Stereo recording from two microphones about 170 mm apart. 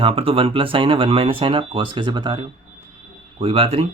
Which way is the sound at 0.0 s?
35° right (ahead or behind).